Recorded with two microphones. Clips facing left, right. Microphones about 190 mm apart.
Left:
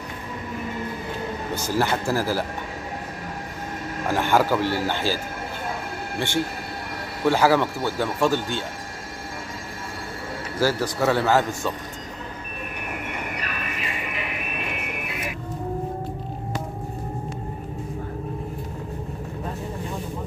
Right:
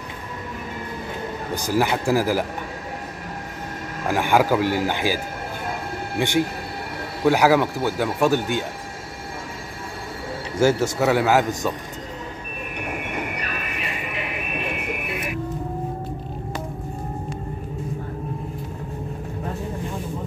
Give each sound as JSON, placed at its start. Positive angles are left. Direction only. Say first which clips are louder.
{"t": 1.5, "sound": "speech", "louder": "right 2 dB", "side_deg": -15}
{"t": 4.1, "sound": "speech", "louder": "right 2 dB", "side_deg": -10}
{"t": 10.6, "sound": "speech", "louder": "right 4 dB", "side_deg": -25}
{"t": 11.1, "sound": "speech", "louder": "right 1 dB", "side_deg": -10}